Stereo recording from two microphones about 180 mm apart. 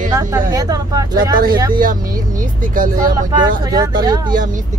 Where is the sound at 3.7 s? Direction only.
20° right (ahead or behind).